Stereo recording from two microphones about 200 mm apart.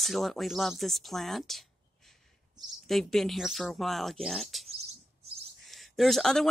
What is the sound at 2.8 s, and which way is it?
Speech, centre (ahead or behind).